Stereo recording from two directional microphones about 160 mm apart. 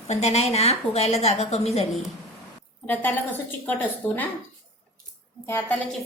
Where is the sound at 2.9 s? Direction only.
10° left (ahead or behind).